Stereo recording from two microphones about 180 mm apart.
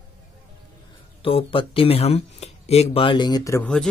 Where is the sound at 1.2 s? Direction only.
30° left (ahead or behind).